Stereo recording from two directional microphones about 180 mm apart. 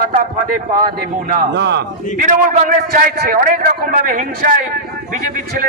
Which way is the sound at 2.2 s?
45° right (ahead or behind).